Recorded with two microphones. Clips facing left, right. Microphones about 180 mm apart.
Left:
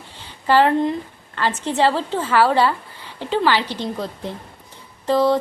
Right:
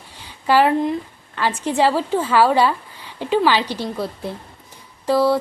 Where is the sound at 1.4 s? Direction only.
10° right (ahead or behind).